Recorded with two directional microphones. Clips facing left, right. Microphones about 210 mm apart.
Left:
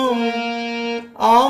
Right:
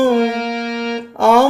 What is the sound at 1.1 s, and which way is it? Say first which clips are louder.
Music: right 5 dB; 50° right (ahead or behind).